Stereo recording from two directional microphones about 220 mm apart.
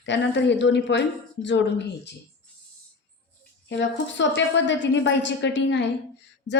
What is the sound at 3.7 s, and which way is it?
A woman's voice, 55° left (ahead or behind).